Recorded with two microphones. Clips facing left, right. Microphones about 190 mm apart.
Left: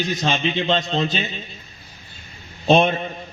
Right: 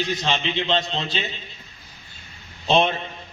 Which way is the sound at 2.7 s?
50° left (ahead or behind).